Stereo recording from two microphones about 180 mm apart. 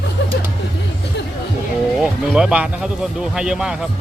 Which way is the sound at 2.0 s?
5° right (ahead or behind).